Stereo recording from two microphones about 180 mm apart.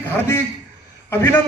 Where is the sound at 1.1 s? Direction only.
10° left (ahead or behind).